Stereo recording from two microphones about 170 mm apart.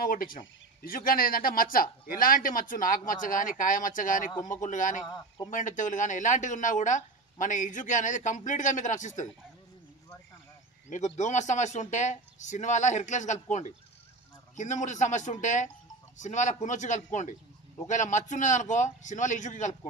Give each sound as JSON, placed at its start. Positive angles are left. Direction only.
{"t": 0.0, "sound": "a man's voice", "side_deg": 55}
{"t": 10.9, "sound": "speech", "side_deg": 45}